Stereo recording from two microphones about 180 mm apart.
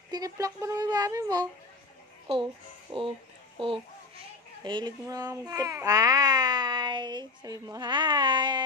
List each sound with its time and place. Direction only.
0.1 s speech: 20° right (ahead or behind)
2.9 s a child's voice: 30° right (ahead or behind)